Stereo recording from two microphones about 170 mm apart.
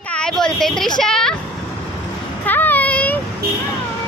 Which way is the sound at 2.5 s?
10° left (ahead or behind).